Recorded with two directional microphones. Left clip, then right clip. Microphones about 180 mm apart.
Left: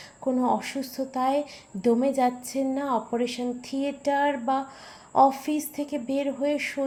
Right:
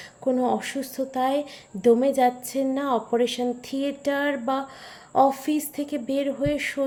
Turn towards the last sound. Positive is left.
turn(degrees=-20)  # may be behind; listen again after turning